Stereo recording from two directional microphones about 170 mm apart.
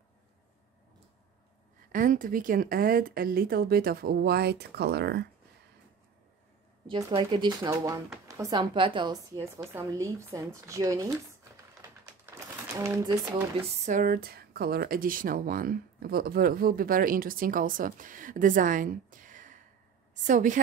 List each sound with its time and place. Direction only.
1.9 s speech: 50° right (ahead or behind); by 5.3 s 75° right (ahead or behind)
6.9 s a woman's voice: 30° right (ahead or behind)
12.7 s speech: 15° right (ahead or behind)
13.8 s a woman's voice: 50° right (ahead or behind)